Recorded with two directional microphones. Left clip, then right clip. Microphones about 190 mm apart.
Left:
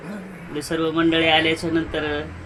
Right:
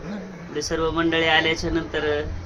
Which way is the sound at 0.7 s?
45° left (ahead or behind).